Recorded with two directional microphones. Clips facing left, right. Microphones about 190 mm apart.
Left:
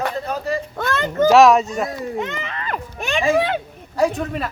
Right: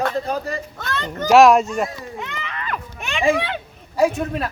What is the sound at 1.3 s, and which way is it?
Speech, centre (ahead or behind).